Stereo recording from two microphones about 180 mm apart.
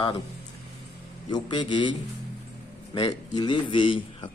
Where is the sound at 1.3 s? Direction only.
25° left (ahead or behind).